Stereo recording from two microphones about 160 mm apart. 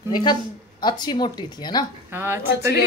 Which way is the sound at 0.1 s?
25° left (ahead or behind).